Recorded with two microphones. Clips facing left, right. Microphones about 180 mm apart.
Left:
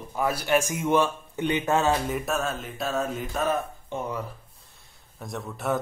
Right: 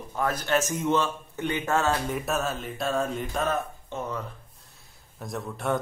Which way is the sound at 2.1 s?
Centre (ahead or behind).